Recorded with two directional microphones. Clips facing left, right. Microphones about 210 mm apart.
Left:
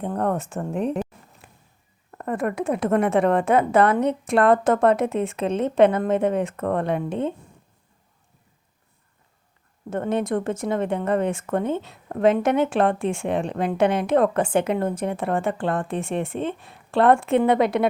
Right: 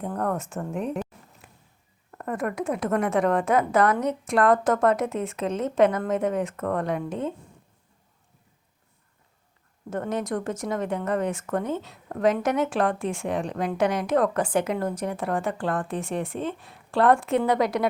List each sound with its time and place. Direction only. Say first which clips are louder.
0.0 s speech: left 3 dB; 30° left (ahead or behind)
9.9 s speech: left 4 dB; 25° left (ahead or behind)